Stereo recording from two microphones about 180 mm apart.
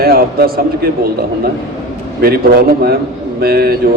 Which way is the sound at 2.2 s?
60° right (ahead or behind).